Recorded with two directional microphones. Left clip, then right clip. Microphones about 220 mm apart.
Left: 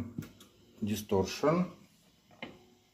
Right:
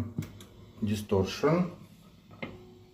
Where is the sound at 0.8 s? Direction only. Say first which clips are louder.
Right 2 dB; 20° left (ahead or behind).